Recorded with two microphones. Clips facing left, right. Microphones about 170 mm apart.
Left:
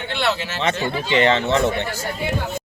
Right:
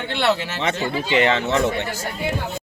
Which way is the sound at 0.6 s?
10° right (ahead or behind).